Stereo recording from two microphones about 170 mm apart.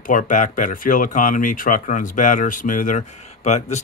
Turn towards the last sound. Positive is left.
turn(degrees=40)  # may be behind; listen again after turning